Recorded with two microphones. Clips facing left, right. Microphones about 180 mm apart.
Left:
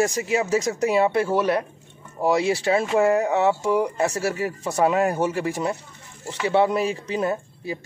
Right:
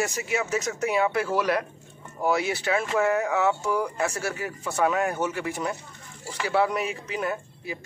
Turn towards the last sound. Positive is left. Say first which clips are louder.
# left 5 dB
turn(degrees=30)  # may be behind; listen again after turning